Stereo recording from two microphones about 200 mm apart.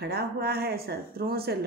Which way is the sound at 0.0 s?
55° right (ahead or behind).